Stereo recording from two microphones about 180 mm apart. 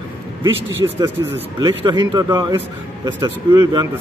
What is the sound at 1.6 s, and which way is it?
A man's voice, 25° right (ahead or behind).